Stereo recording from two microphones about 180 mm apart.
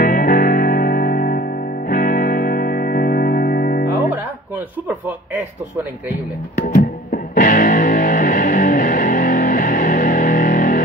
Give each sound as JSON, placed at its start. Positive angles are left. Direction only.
{"t": 0.0, "sound": "music", "side_deg": 50}
{"t": 6.6, "sound": "music", "side_deg": 50}